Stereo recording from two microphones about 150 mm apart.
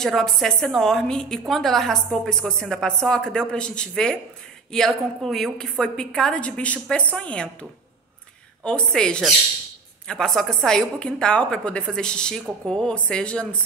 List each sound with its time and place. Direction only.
0.0 s a woman's voice: centre (ahead or behind)
8.6 s a woman's voice: 5° left (ahead or behind)